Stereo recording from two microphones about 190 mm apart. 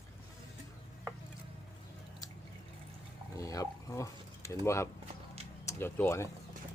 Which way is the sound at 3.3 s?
20° left (ahead or behind).